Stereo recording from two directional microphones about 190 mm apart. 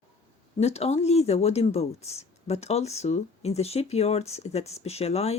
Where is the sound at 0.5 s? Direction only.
35° left (ahead or behind).